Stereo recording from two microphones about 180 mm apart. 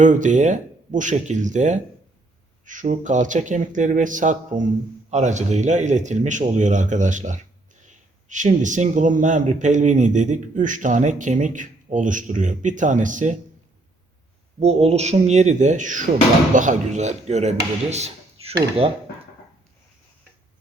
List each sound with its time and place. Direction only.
0.0 s speech: 45° right (ahead or behind)
14.6 s speech: 35° right (ahead or behind)
17.9 s a sound: 35° right (ahead or behind)